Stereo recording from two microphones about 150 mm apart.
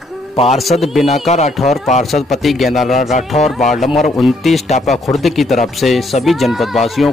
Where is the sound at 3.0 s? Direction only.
55° left (ahead or behind).